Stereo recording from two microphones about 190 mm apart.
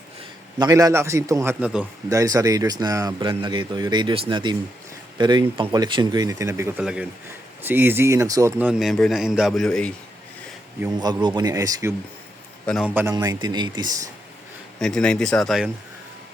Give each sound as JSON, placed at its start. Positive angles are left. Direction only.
{"t": 0.6, "sound": "a man's voice", "side_deg": -20}
{"t": 2.0, "sound": "a man's voice", "side_deg": -20}
{"t": 10.9, "sound": "a man's voice", "side_deg": -20}
{"t": 12.6, "sound": "a man's voice", "side_deg": 0}
{"t": 13.1, "sound": "a man's voice", "side_deg": -20}
{"t": 14.8, "sound": "speech", "side_deg": 5}